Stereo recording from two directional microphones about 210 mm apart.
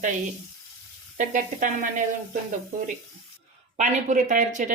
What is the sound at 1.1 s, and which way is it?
Speech, 40° right (ahead or behind).